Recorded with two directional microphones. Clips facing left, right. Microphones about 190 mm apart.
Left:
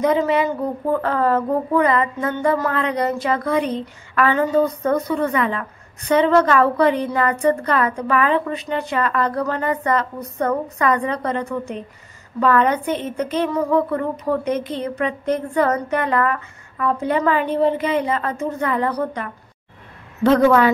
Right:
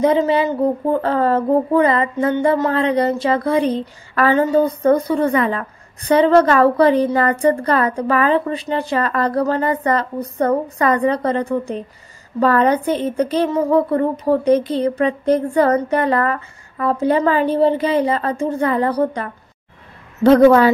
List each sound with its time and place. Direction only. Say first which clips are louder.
0.0 s speech: right 2 dB; 30° right (ahead or behind)
1.0 s music: right 3 dB; 30° right (ahead or behind)